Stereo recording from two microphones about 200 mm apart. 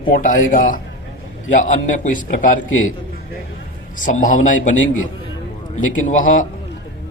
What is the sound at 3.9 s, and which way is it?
Speech, 40° left (ahead or behind).